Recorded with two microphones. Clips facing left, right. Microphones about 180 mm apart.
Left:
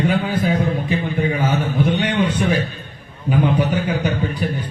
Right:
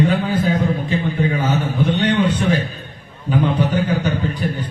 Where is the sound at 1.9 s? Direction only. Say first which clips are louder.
Right 2 dB; 10° left (ahead or behind).